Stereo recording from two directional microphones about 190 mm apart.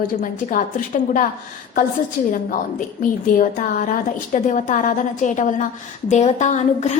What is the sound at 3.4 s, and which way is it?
A woman's voice, 45° left (ahead or behind).